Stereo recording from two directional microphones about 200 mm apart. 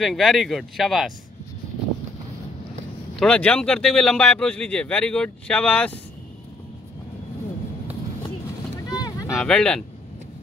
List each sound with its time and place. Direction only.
0.0 s speech: centre (ahead or behind)
3.2 s speech: 5° left (ahead or behind)
8.9 s boat: 20° left (ahead or behind)
9.3 s speech: 5° left (ahead or behind)